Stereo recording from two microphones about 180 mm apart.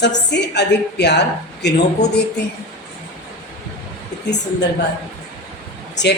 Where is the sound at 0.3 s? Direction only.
70° left (ahead or behind).